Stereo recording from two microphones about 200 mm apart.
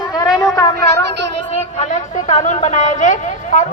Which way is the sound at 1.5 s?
35° left (ahead or behind).